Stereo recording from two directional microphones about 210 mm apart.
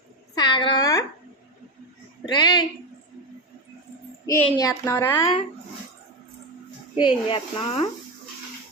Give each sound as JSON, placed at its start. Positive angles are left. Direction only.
{"t": 0.3, "sound": "a sound", "side_deg": 20}
{"t": 2.2, "sound": "a woman's voice", "side_deg": 20}
{"t": 4.4, "sound": "a woman's voice", "side_deg": 20}
{"t": 6.9, "sound": "speech", "side_deg": 20}